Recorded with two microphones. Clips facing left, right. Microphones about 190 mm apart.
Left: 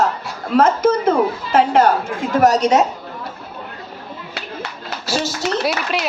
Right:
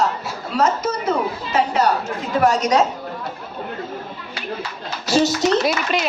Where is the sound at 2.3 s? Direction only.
40° left (ahead or behind).